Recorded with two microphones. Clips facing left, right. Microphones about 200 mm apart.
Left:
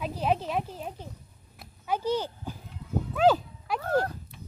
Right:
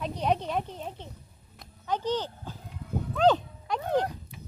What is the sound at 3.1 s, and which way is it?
Goat, 5° left (ahead or behind).